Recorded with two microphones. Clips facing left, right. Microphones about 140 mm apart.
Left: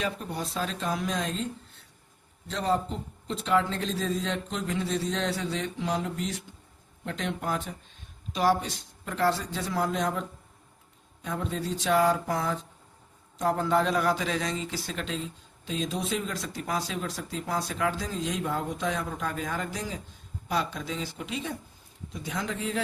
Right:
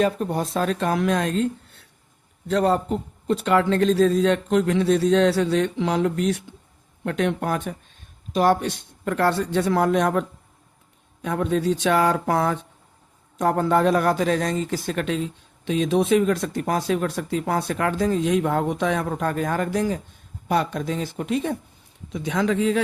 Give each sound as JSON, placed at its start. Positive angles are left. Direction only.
{"t": 0.0, "sound": "a man's voice", "side_deg": -50}
{"t": 2.5, "sound": "a man's voice", "side_deg": -60}
{"t": 22.1, "sound": "speech", "side_deg": -80}